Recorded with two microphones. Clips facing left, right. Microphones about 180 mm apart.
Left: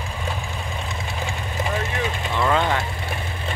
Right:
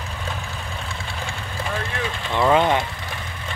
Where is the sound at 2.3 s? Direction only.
20° right (ahead or behind).